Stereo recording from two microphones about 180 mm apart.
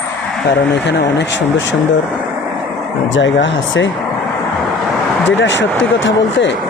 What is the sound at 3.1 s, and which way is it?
Speech, 90° left.